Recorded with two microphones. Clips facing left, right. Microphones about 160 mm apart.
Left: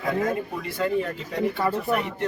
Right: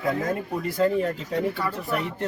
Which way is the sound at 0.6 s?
40° right (ahead or behind).